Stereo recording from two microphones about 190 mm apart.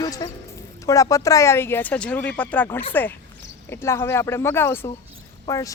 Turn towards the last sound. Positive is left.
turn(degrees=15)  # may be behind; listen again after turning